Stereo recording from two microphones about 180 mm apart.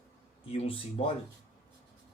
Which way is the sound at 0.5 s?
30° left (ahead or behind).